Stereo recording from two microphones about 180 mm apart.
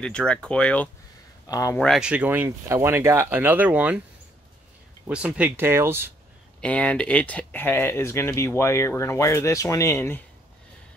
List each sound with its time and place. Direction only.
0.0 s speech: 5° left (ahead or behind)
1.5 s speech: 20° left (ahead or behind)
1.8 s speech: centre (ahead or behind)
5.0 s speech: 5° right (ahead or behind)
6.6 s speech: 5° left (ahead or behind)